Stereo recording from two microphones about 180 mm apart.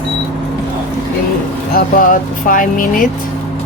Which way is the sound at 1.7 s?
50° left (ahead or behind).